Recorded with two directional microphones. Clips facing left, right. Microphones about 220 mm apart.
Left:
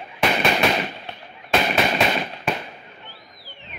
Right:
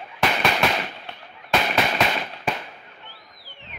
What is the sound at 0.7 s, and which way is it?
Firecracker, 15° left (ahead or behind).